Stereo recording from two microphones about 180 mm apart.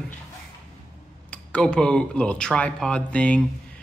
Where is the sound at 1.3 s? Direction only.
5° left (ahead or behind).